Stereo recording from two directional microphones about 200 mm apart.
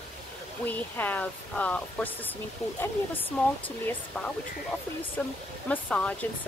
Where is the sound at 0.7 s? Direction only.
10° left (ahead or behind).